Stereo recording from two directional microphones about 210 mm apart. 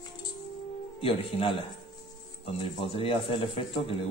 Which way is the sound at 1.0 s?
25° left (ahead or behind).